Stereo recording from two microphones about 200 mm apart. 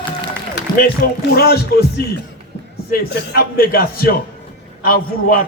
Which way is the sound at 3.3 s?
50° left (ahead or behind).